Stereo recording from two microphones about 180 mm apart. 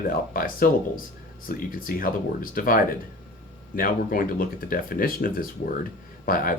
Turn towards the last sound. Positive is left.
turn(degrees=50)  # may be behind; listen again after turning